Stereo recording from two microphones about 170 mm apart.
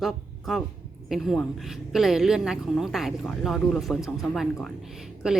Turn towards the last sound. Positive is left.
turn(degrees=-5)  # may be behind; listen again after turning